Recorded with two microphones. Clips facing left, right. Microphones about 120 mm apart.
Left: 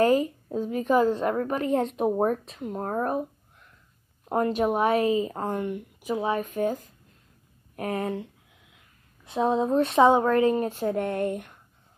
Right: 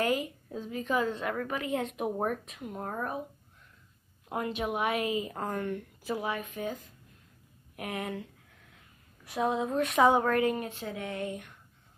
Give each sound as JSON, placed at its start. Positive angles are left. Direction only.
{"t": 0.0, "sound": "a woman's voice", "side_deg": 40}
{"t": 4.3, "sound": "speech", "side_deg": 40}
{"t": 5.6, "sound": "speech", "side_deg": 15}
{"t": 6.4, "sound": "speech", "side_deg": 40}
{"t": 10.7, "sound": "speech", "side_deg": 50}